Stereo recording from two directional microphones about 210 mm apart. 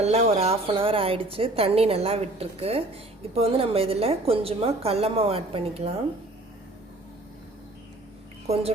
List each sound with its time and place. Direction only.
0.0 s a woman's voice: 30° right (ahead or behind)
8.4 s a woman's voice: 30° right (ahead or behind)